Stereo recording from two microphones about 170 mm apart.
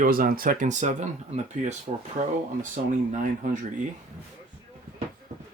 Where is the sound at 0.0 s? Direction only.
60° right (ahead or behind).